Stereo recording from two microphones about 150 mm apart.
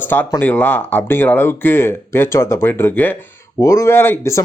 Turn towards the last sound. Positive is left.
turn(degrees=15)  # may be behind; listen again after turning